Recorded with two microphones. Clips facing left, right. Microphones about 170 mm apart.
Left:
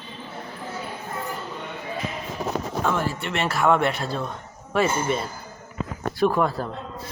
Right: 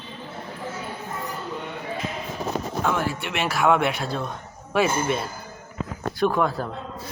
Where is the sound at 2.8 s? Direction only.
5° right (ahead or behind).